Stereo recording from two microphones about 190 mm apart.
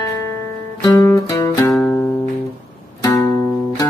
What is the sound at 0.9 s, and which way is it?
Music, 15° left (ahead or behind).